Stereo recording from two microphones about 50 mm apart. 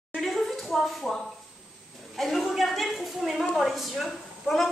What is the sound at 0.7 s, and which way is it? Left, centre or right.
A woman's voice, centre.